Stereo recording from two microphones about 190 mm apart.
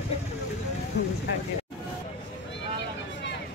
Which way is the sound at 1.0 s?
60° left (ahead or behind).